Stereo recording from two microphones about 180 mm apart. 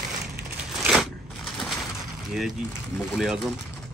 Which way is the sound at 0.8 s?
Centre (ahead or behind).